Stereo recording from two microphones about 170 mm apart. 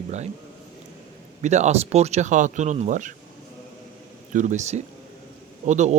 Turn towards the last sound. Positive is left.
turn(degrees=-45)  # may be behind; listen again after turning